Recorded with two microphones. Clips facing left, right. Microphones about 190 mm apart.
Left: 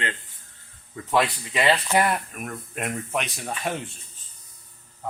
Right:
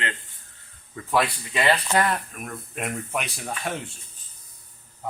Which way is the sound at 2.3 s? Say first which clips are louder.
Left 1 dB; centre (ahead or behind).